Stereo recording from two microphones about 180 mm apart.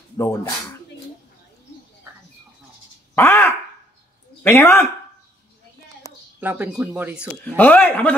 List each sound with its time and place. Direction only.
0.2 s speech: 15° left (ahead or behind)
3.2 s a sound: 15° left (ahead or behind)
4.4 s speech: 15° left (ahead or behind)
6.4 s speech: 10° right (ahead or behind)
7.4 s speech: 10° left (ahead or behind)